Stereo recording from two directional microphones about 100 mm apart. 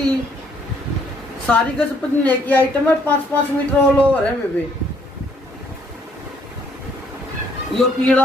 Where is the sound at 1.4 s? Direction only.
10° left (ahead or behind).